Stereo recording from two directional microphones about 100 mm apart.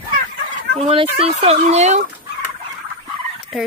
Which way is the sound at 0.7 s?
80° right.